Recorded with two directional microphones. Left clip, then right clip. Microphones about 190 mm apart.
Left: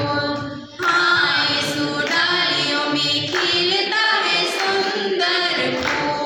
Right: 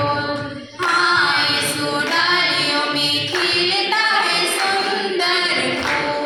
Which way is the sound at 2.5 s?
35° left (ahead or behind).